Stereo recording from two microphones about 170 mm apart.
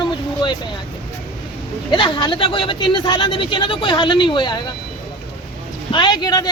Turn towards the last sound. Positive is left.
turn(degrees=25)  # may be behind; listen again after turning